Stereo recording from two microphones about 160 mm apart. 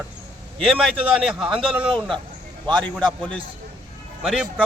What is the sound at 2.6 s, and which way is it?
Speech, 30° right (ahead or behind).